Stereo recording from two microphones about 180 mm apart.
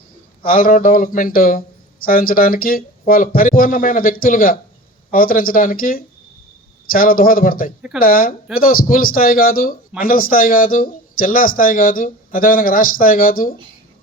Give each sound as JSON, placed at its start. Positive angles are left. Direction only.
{"t": 0.5, "sound": "speech", "side_deg": 50}